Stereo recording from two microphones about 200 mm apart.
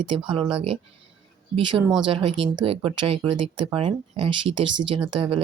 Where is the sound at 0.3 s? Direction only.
25° right (ahead or behind).